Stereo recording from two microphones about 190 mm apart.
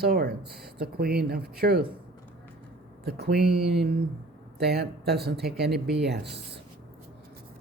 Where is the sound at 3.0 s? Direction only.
60° right (ahead or behind).